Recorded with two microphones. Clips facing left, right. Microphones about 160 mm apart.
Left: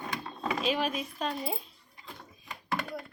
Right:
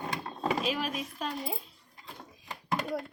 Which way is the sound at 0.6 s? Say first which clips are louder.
Left 2 dB; 5° right (ahead or behind).